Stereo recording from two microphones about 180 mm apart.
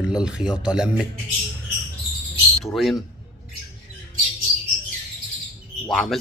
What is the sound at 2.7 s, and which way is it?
Speech, centre (ahead or behind).